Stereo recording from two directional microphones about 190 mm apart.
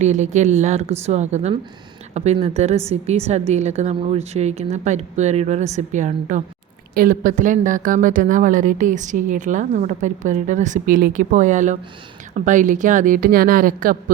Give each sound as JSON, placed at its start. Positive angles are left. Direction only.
{"t": 0.0, "sound": "a woman's voice", "side_deg": -40}